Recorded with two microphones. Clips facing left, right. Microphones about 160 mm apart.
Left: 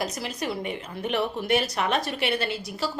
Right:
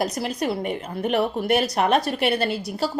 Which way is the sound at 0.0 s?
35° right (ahead or behind).